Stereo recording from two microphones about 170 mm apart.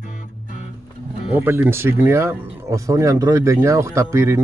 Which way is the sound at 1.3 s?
10° right (ahead or behind).